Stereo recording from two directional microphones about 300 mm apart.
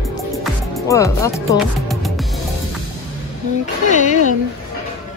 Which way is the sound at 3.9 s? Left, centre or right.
Left.